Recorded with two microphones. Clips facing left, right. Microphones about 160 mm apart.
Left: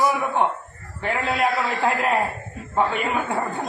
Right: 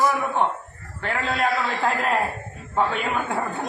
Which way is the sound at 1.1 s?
5° left (ahead or behind).